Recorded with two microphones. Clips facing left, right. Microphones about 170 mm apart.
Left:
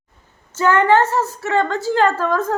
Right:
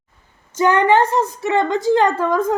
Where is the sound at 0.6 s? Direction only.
15° right (ahead or behind).